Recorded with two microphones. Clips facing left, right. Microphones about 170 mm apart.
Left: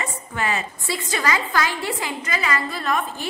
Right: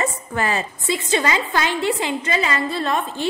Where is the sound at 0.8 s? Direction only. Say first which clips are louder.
Right 6 dB; 20° right (ahead or behind).